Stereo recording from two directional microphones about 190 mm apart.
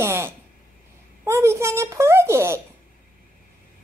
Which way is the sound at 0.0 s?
15° right (ahead or behind).